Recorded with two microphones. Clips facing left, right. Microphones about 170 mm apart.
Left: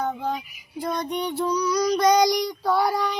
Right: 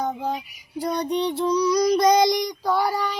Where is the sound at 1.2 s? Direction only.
30° right (ahead or behind).